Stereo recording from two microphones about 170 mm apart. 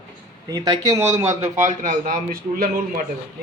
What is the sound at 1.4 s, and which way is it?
A man's voice, 50° right (ahead or behind).